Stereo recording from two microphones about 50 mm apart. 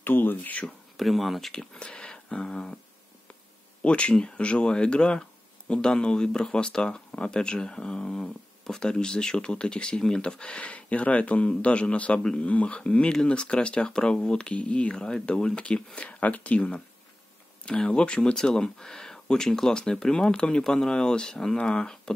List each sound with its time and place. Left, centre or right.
0.0 s speech: left
0.9 s speech: centre
1.5 s speech: centre
3.8 s speech: left
12.4 s speech: left
14.5 s speech: left
15.0 s speech: centre